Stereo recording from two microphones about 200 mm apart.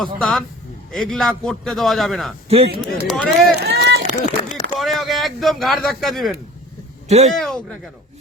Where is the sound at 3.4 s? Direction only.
55° right (ahead or behind).